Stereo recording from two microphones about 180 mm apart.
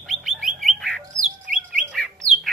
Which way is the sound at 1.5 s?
45° right (ahead or behind).